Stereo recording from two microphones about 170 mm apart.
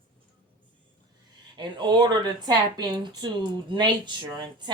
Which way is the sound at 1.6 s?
25° right (ahead or behind).